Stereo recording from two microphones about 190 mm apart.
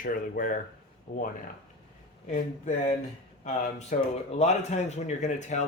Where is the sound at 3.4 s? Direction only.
40° left (ahead or behind).